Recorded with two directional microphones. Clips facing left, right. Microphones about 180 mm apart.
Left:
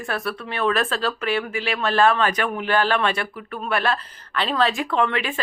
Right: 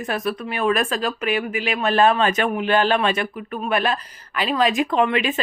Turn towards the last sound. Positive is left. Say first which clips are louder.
# right 3 dB
turn(degrees=-15)  # may be behind; listen again after turning